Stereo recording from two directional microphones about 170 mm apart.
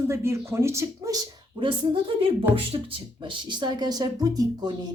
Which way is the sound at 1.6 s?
30° right (ahead or behind).